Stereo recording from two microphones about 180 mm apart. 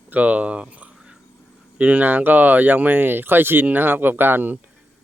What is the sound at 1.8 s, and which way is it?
Speech, 10° right (ahead or behind).